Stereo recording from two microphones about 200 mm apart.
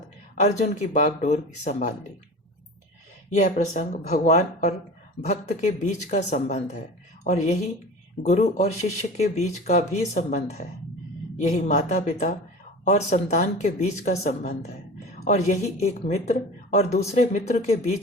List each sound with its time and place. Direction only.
0.3 s speech: 35° left (ahead or behind)
3.3 s a woman's voice: 40° left (ahead or behind)